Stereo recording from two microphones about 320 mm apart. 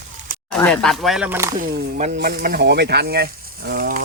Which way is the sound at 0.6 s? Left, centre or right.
Centre.